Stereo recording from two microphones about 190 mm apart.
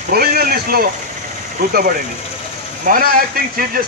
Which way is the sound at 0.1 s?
55° right (ahead or behind).